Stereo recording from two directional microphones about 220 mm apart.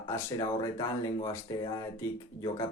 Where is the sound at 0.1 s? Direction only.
15° left (ahead or behind).